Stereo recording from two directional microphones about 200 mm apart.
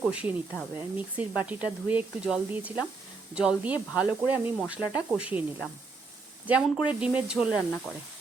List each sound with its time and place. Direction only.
0.0 s speech: 5° right (ahead or behind)